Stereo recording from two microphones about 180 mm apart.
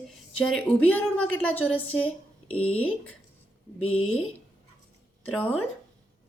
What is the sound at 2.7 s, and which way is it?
Speech, 10° left (ahead or behind).